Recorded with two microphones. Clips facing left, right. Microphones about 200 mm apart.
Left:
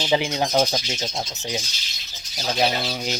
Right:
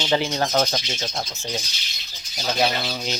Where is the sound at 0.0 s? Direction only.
10° left (ahead or behind).